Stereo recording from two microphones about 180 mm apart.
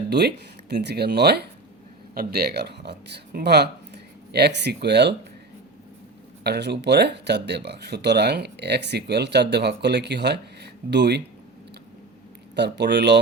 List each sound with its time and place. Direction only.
0.1 s speech: 65° right (ahead or behind)
6.4 s speech: 65° right (ahead or behind)
12.5 s speech: 70° right (ahead or behind)